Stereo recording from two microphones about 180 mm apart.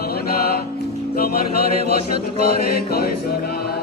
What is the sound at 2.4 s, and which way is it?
Choir, 60° left (ahead or behind).